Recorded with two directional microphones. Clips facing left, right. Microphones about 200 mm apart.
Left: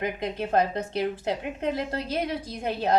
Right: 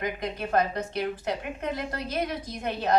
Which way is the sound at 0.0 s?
25° left (ahead or behind).